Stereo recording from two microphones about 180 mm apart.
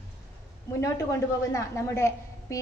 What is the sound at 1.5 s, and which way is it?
A woman's voice, 15° left (ahead or behind).